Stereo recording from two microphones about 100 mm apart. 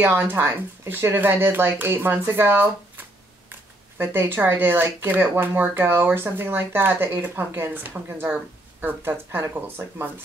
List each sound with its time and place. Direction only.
0.0 s speech: 20° right (ahead or behind)